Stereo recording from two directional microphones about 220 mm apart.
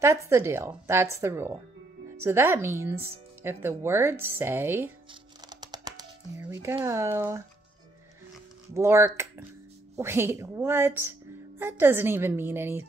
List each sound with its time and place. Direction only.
0.0 s a woman's voice: 15° right (ahead or behind)
5.5 s music: 20° right (ahead or behind)
8.7 s a woman's voice: 10° right (ahead or behind)